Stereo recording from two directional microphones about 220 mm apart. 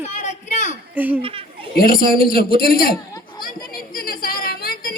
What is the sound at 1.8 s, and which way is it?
A man's voice, 40° left (ahead or behind).